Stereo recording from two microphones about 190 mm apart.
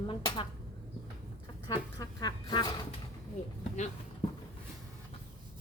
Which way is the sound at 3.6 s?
35° left (ahead or behind).